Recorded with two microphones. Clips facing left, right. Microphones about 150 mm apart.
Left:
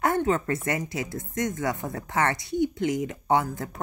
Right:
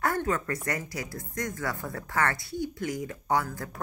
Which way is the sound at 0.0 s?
20° left (ahead or behind).